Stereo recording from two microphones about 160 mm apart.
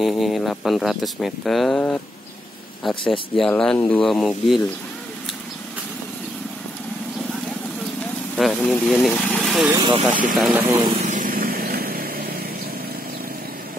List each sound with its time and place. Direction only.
0.0 s speech: centre (ahead or behind)
3.1 s speech: centre (ahead or behind)
8.4 s vehicle: centre (ahead or behind)
9.8 s speech: 30° right (ahead or behind)
10.3 s speech: centre (ahead or behind)
10.8 s speech: 30° right (ahead or behind)
11.1 s vehicle: 60° right (ahead or behind)